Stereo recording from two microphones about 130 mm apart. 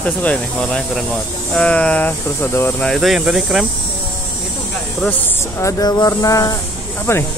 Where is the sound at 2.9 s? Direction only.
5° right (ahead or behind).